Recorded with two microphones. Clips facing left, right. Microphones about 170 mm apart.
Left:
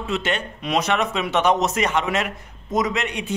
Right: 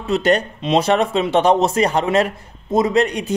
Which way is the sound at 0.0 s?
40° right (ahead or behind).